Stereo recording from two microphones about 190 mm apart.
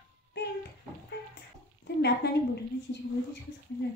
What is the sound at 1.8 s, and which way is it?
Speech, 65° left (ahead or behind).